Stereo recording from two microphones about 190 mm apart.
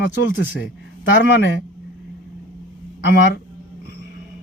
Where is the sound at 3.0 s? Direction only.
60° left (ahead or behind).